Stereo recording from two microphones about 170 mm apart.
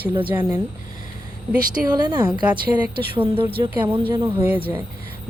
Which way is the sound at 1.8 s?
25° right (ahead or behind).